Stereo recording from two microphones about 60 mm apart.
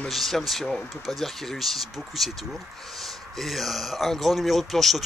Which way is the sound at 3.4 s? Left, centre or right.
Centre.